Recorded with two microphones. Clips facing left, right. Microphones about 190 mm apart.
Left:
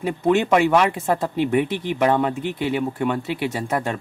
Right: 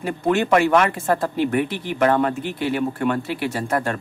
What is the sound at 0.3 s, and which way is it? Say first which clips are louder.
Speech: even; 20° left (ahead or behind).